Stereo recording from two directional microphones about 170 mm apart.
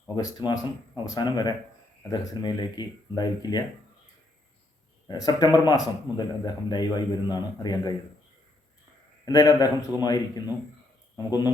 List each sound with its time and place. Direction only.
0.2 s speech: 20° left (ahead or behind)
5.0 s speech: 25° left (ahead or behind)
9.2 s speech: 20° left (ahead or behind)